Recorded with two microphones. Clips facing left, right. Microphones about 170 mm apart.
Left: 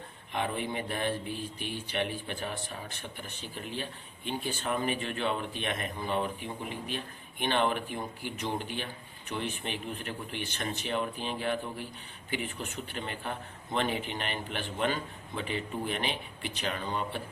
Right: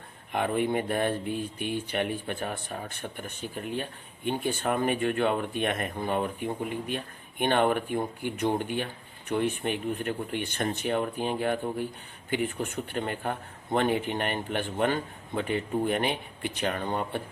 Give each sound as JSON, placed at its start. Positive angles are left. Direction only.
{"t": 0.3, "sound": "speech", "side_deg": -50}